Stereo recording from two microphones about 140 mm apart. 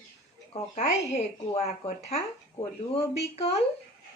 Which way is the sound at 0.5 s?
50° left (ahead or behind).